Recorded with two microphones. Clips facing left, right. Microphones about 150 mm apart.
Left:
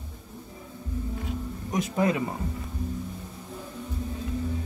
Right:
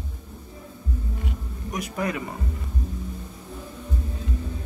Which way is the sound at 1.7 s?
25° left (ahead or behind).